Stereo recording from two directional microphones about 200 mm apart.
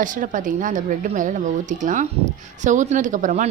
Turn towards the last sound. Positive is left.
turn(degrees=-40)  # may be behind; listen again after turning